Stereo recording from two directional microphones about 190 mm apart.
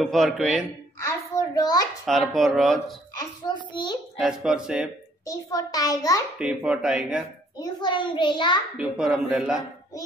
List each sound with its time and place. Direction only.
0.0 s speech: centre (ahead or behind)
0.9 s a sound: 20° left (ahead or behind)
2.0 s speech: centre (ahead or behind)
3.2 s a child's voice: 25° left (ahead or behind)
4.2 s speech: 5° right (ahead or behind)
5.2 s a child's voice: 20° left (ahead or behind)
6.3 s speech: 5° right (ahead or behind)
7.5 s a child's voice: 20° left (ahead or behind)
8.7 s speech: 5° right (ahead or behind)